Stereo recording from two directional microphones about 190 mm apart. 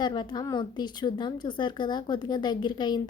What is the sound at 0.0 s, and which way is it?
A woman's voice, 20° left (ahead or behind).